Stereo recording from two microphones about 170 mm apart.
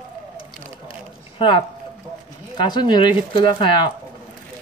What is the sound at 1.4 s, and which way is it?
Speech, 30° left (ahead or behind).